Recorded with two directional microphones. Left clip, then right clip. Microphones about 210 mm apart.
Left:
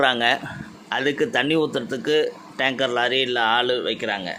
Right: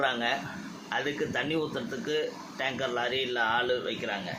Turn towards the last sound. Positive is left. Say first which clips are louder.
# left 7 dB
turn(degrees=50)  # may be behind; listen again after turning